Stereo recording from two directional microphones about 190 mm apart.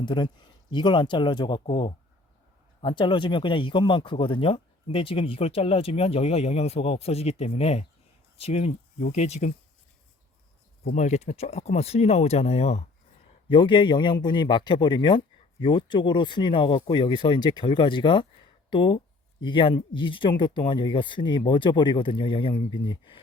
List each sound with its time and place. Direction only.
0.0 s speech: 25° left (ahead or behind)
10.9 s speech: 40° left (ahead or behind)